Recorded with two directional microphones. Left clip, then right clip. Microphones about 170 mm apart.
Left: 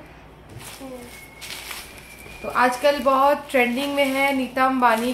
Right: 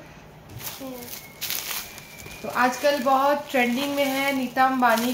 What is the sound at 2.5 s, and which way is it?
Speech, 15° left (ahead or behind).